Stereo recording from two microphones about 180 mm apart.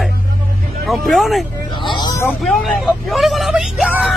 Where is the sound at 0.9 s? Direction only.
Centre (ahead or behind).